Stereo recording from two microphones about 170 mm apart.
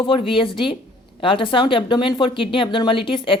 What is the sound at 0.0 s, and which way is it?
Speech, 30° left (ahead or behind).